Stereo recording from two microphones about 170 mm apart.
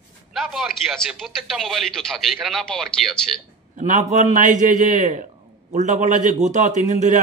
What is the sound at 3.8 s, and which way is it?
A man's voice, 45° right (ahead or behind).